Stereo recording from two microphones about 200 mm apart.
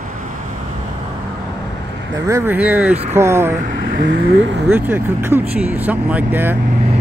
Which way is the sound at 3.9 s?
55° right (ahead or behind).